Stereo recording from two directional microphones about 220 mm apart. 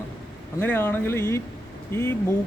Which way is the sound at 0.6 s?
10° left (ahead or behind).